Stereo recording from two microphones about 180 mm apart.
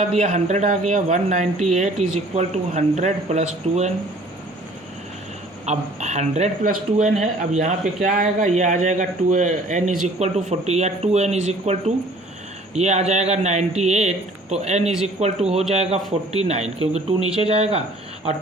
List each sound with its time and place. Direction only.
0.0 s speech: 45° right (ahead or behind)
5.6 s speech: 40° right (ahead or behind)